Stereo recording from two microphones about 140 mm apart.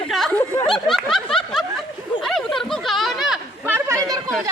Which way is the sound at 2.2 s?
Centre (ahead or behind).